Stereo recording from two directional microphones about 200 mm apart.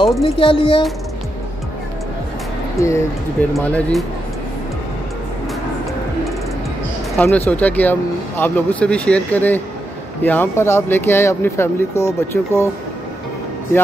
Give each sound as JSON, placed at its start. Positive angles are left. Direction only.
{"t": 0.0, "sound": "speech", "side_deg": 25}
{"t": 2.8, "sound": "speech", "side_deg": 15}
{"t": 3.5, "sound": "speech", "side_deg": 5}
{"t": 7.2, "sound": "speech", "side_deg": 10}